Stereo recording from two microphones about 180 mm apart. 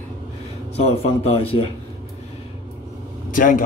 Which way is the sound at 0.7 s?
35° left (ahead or behind).